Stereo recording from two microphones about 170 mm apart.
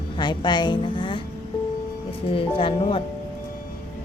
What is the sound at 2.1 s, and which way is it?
Music, 35° left (ahead or behind).